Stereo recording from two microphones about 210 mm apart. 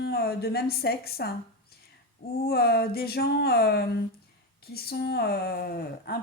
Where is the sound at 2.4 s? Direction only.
50° left (ahead or behind).